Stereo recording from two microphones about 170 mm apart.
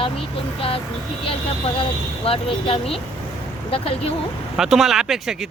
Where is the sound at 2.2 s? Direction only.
35° left (ahead or behind).